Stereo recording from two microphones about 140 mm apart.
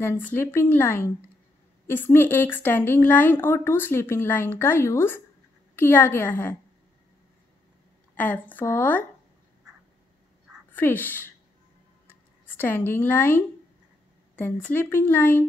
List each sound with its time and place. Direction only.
0.0 s speech: 15° left (ahead or behind)
8.2 s speech: 10° left (ahead or behind)
10.7 s speech: 15° left (ahead or behind)
12.1 s a sound: 15° left (ahead or behind)
14.3 s speech: 15° left (ahead or behind)